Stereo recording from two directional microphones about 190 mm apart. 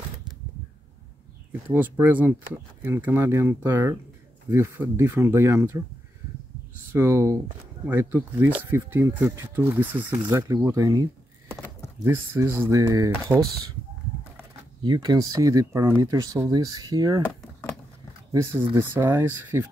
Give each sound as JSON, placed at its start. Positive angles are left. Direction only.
{"t": 1.7, "sound": "speech", "side_deg": -10}
{"t": 6.9, "sound": "speech", "side_deg": -15}
{"t": 11.5, "sound": "a sound", "side_deg": 15}
{"t": 12.0, "sound": "speech", "side_deg": -15}
{"t": 14.8, "sound": "speech", "side_deg": -25}
{"t": 18.3, "sound": "speech", "side_deg": -15}